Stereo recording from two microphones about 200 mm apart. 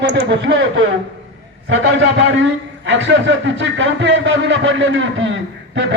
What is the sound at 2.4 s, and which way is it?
A man's voice, 65° right (ahead or behind).